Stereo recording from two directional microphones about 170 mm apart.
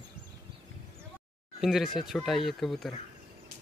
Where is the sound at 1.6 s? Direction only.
Centre (ahead or behind).